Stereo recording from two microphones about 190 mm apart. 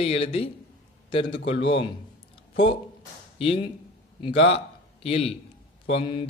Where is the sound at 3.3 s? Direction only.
30° left (ahead or behind).